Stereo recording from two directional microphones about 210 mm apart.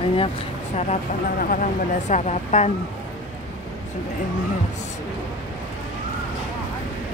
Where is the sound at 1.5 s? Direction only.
35° left (ahead or behind).